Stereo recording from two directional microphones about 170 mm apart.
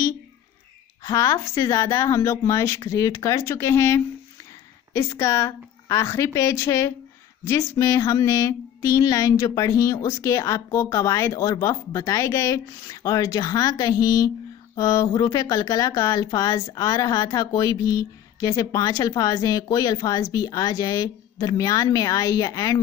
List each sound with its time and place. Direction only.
1.0 s a woman's voice: 20° left (ahead or behind)